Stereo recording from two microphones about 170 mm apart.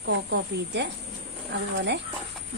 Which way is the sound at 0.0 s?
90° right.